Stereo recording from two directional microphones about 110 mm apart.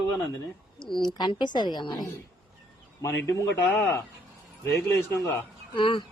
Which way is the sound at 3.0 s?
25° left (ahead or behind).